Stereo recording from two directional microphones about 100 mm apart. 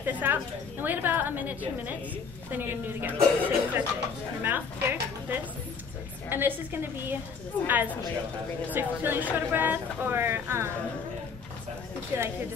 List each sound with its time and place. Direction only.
0.0 s a woman's voice: 20° right (ahead or behind)
12.1 s speech: 25° right (ahead or behind)